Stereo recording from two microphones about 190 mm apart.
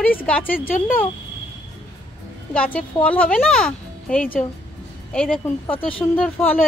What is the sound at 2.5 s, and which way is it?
Speech, 5° left (ahead or behind).